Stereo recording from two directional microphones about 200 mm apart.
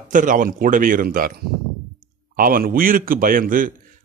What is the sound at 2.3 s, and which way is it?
A man's voice, 45° right (ahead or behind).